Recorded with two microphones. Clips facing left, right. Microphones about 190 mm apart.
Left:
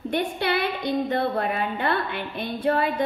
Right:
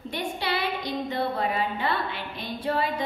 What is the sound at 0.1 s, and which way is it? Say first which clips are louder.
A woman's voice: left 5 dB; 60° left (ahead or behind).